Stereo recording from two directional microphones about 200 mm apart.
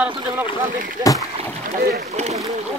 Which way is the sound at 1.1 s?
15° left (ahead or behind).